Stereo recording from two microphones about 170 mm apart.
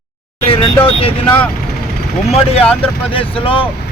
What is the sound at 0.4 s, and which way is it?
Vehicle, 30° left (ahead or behind).